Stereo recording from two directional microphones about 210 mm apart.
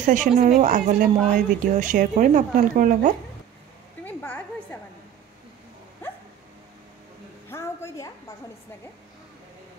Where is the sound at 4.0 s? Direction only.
10° left (ahead or behind).